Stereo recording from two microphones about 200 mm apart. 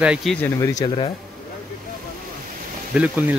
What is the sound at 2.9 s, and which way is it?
Speech, 10° right (ahead or behind).